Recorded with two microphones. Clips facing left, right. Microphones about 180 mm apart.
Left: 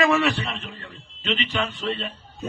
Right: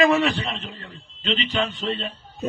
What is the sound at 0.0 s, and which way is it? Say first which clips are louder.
A man's voice: right 2 dB; 25° right (ahead or behind).